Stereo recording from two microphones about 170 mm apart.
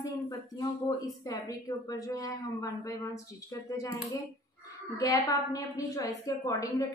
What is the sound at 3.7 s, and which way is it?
Speech, 20° left (ahead or behind).